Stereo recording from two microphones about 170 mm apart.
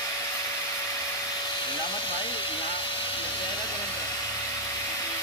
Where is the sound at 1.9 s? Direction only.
30° left (ahead or behind).